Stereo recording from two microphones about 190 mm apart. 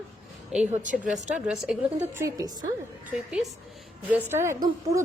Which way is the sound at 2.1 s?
15° right (ahead or behind).